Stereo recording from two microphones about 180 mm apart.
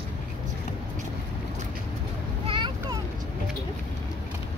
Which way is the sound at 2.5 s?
25° right (ahead or behind).